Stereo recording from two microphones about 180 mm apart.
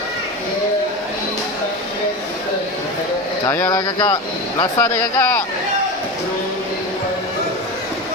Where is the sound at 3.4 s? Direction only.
20° left (ahead or behind).